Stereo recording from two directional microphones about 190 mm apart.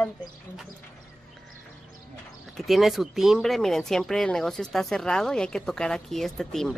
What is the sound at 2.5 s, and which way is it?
Speech, centre (ahead or behind).